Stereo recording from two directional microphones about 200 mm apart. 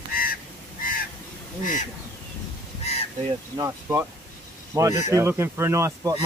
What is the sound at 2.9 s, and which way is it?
Crow, 30° left (ahead or behind).